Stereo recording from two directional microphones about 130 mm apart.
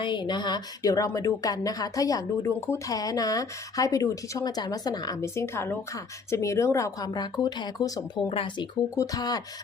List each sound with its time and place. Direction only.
0.0 s a woman's voice: 35° left (ahead or behind)
8.3 s speech: 45° left (ahead or behind)
9.0 s a woman's voice: 30° left (ahead or behind)